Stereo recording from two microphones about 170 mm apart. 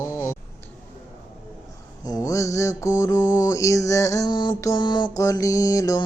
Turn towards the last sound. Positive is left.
turn(degrees=20)  # may be behind; listen again after turning